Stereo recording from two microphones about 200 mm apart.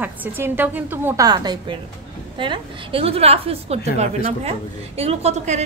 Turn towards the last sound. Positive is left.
turn(degrees=-35)  # may be behind; listen again after turning